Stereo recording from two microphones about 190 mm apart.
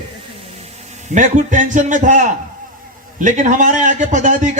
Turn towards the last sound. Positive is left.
turn(degrees=-40)  # may be behind; listen again after turning